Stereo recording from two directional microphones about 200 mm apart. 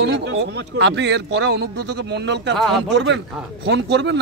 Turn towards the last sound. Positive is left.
turn(degrees=-60)  # may be behind; listen again after turning